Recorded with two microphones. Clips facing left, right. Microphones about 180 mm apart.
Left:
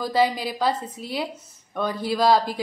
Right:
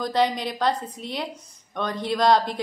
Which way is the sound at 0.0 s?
5° left (ahead or behind).